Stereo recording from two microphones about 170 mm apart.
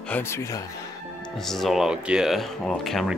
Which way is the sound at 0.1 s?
15° left (ahead or behind).